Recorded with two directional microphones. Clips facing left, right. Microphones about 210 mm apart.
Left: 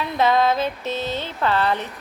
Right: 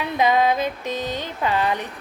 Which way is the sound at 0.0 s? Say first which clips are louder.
Even; 15° right (ahead or behind).